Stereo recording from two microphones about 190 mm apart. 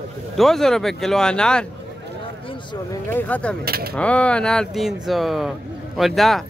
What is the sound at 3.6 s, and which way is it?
Speech, 55° right (ahead or behind).